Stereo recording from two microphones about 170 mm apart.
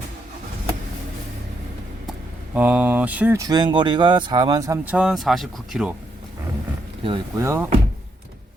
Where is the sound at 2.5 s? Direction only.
10° right (ahead or behind).